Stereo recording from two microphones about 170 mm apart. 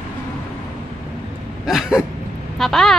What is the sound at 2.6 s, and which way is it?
Speech, centre (ahead or behind).